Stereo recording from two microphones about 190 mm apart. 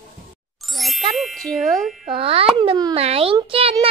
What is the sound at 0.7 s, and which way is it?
Ding, centre (ahead or behind).